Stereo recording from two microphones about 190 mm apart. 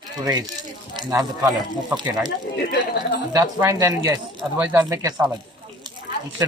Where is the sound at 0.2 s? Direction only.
20° right (ahead or behind).